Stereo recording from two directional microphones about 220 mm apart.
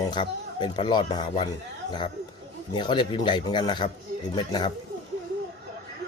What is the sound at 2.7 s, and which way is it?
Speech, 20° left (ahead or behind).